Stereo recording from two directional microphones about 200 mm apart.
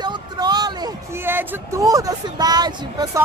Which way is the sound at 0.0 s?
20° right (ahead or behind).